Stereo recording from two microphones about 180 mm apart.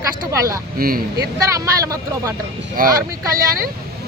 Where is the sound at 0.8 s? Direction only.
60° right (ahead or behind).